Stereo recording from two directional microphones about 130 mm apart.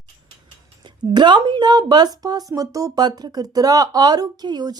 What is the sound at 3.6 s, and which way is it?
Speech, 30° right (ahead or behind).